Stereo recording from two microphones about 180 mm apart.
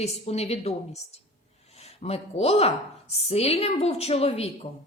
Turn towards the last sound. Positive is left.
turn(degrees=35)  # may be behind; listen again after turning